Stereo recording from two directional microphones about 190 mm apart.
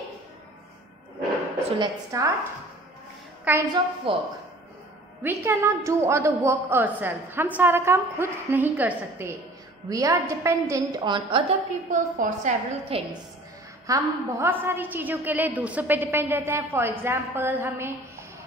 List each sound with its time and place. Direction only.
1.8 s a woman's voice: 15° right (ahead or behind)
3.7 s a woman's voice: 25° right (ahead or behind)
5.4 s a woman's voice: 15° right (ahead or behind); by 13.0 s 40° right (ahead or behind)
13.8 s a woman's voice: 15° right (ahead or behind)